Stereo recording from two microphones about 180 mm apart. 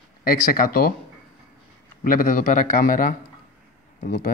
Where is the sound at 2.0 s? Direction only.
50° left (ahead or behind).